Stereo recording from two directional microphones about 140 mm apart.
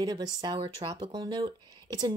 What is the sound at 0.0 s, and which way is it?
Speech, 30° right (ahead or behind).